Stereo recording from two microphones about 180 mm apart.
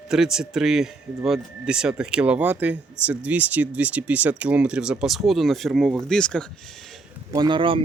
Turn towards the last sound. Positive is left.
turn(degrees=-30)  # may be behind; listen again after turning